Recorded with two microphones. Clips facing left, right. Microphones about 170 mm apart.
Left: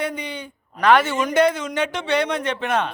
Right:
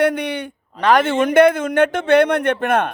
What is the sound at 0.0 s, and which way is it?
Speech, 75° right (ahead or behind).